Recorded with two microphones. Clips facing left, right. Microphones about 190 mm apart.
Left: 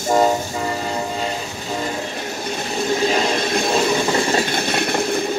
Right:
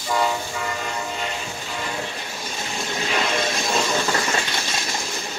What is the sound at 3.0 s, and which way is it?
Vehicle, 35° left (ahead or behind).